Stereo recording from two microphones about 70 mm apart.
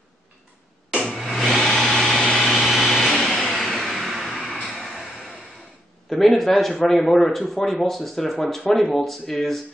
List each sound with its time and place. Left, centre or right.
0.9 s blender: centre
2.4 s vehicle: centre
4.6 s a sound: centre
6.0 s speech: centre